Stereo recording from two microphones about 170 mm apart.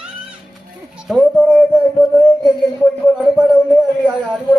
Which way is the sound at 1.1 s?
5° left (ahead or behind).